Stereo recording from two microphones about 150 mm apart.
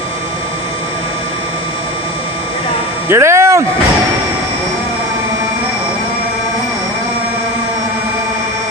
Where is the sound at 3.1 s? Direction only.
20° right (ahead or behind).